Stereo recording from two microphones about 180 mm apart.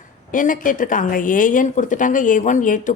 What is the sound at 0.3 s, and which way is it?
A woman's voice, 50° left (ahead or behind).